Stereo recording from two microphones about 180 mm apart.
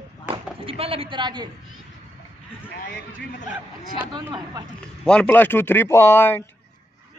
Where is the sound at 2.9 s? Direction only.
80° left.